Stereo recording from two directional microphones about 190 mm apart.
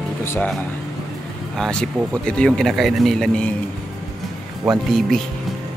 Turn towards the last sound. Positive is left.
turn(degrees=0)  # may be behind; listen again after turning